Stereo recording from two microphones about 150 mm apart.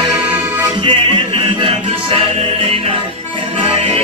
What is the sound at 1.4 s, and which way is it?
Music, 35° right (ahead or behind).